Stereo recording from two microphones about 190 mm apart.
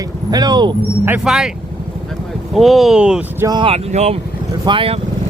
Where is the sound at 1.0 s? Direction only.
5° right (ahead or behind).